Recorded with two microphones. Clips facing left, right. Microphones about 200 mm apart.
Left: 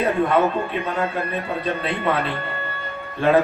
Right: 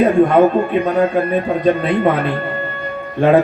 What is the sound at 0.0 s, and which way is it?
A man's voice, 50° right (ahead or behind).